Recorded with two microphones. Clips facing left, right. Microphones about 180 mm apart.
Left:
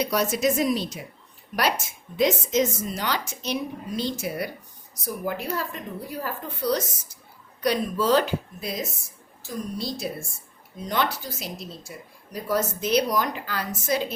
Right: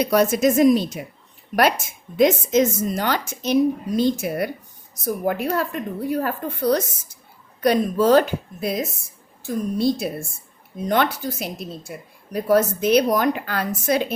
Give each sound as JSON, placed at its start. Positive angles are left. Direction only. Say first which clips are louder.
{"t": 0.0, "sound": "a woman's voice", "louder": "right 6 dB", "side_deg": -55}
{"t": 2.1, "sound": "a woman's voice", "louder": "right 5 dB", "side_deg": -50}